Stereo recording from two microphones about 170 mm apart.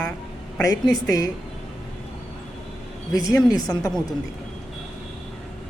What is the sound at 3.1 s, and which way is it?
Speech, 20° left (ahead or behind).